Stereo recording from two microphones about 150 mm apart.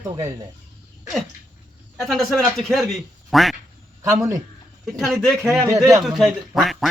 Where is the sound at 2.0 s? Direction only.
Centre (ahead or behind).